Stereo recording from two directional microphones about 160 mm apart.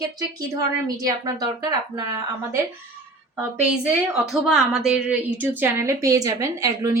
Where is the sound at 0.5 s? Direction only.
20° right (ahead or behind).